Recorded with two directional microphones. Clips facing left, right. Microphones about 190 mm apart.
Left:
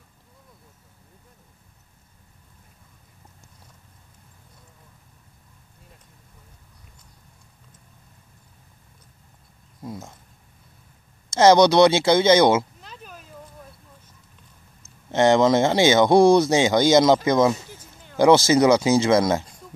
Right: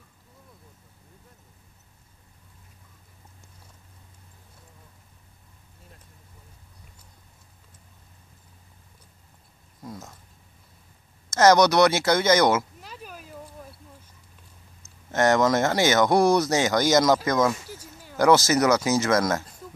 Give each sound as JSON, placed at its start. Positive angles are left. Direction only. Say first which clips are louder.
{"t": 9.8, "sound": "speech", "louder": "left 4 dB", "side_deg": 30}
{"t": 11.2, "sound": "speech", "louder": "left 3 dB", "side_deg": 30}
{"t": 12.8, "sound": "a sound", "louder": "right 1 dB", "side_deg": -5}
{"t": 15.0, "sound": "speech", "louder": "left 4 dB", "side_deg": 25}
{"t": 17.6, "sound": "a sound", "louder": "right 3 dB", "side_deg": -10}
{"t": 18.1, "sound": "speech", "louder": "left 4 dB", "side_deg": 25}